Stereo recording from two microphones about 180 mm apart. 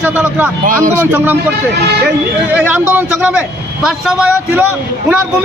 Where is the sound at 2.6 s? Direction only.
10° right (ahead or behind).